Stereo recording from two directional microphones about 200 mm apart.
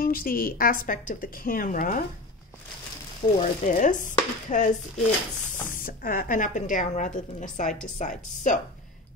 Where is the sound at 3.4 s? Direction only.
40° left (ahead or behind).